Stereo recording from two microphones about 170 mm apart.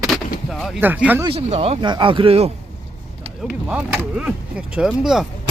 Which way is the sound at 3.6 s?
10° right (ahead or behind).